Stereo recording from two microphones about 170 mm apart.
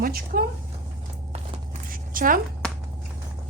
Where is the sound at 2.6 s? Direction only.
5° left (ahead or behind).